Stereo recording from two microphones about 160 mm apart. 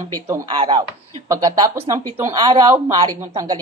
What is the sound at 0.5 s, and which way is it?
Speech, 35° right (ahead or behind).